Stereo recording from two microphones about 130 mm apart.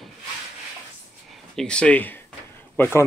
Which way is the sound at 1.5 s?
5° left (ahead or behind).